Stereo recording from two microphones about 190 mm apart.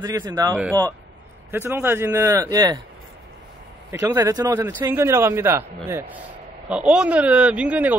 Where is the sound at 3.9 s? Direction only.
15° right (ahead or behind).